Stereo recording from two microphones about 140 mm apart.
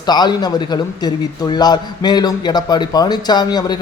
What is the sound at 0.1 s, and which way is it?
A man's voice, 30° left (ahead or behind).